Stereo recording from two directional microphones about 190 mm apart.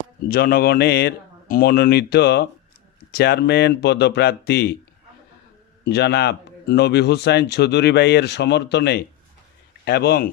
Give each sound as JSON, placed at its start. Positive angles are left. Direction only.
{"t": 0.3, "sound": "a man's voice", "side_deg": 50}
{"t": 5.8, "sound": "a man's voice", "side_deg": 60}